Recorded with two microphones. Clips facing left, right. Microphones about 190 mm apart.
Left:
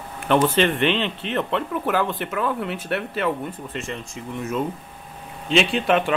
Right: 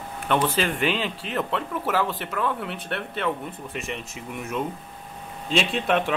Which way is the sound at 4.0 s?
20° right (ahead or behind).